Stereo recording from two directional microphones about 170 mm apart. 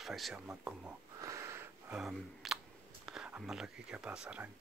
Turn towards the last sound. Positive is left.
turn(degrees=-5)  # may be behind; listen again after turning